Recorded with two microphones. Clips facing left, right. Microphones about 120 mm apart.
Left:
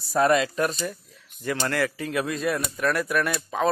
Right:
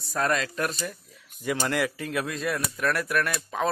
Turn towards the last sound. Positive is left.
turn(degrees=0)  # may be behind; listen again after turning